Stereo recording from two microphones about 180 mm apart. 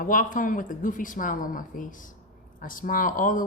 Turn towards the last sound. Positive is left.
turn(degrees=50)  # may be behind; listen again after turning